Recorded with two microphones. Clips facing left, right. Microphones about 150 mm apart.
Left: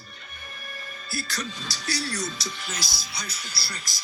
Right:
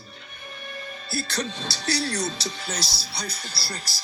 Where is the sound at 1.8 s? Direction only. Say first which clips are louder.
Right 4 dB; 65° right (ahead or behind).